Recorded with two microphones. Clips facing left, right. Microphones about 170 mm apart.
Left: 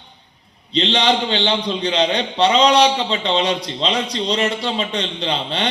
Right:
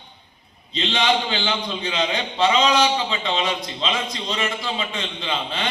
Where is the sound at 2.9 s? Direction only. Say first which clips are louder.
Left 3 dB; 30° left (ahead or behind).